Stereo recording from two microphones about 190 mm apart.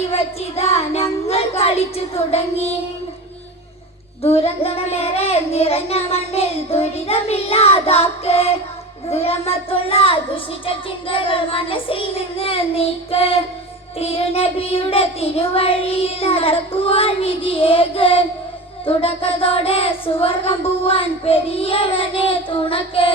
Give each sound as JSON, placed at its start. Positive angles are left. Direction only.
{"t": 0.1, "sound": "child singing", "side_deg": 35}
{"t": 4.2, "sound": "child singing", "side_deg": 30}
{"t": 9.0, "sound": "a child's voice", "side_deg": 30}